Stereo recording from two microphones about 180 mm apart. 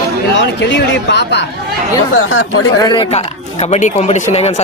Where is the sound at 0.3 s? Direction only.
75° left (ahead or behind).